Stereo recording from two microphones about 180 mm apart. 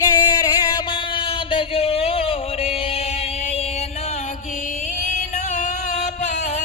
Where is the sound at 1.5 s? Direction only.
35° left (ahead or behind).